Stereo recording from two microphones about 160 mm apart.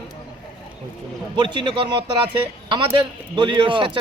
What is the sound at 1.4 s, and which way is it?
Speech, 30° right (ahead or behind).